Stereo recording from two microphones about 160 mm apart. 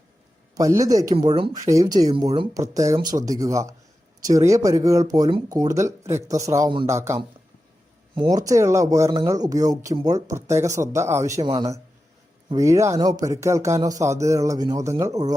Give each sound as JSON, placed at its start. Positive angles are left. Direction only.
{"t": 0.5, "sound": "speech", "side_deg": -20}